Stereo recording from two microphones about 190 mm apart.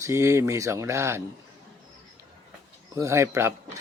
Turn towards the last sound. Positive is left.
turn(degrees=-15)  # may be behind; listen again after turning